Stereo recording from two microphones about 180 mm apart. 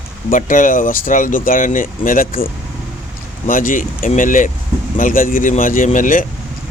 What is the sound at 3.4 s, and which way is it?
Speech, 50° left (ahead or behind).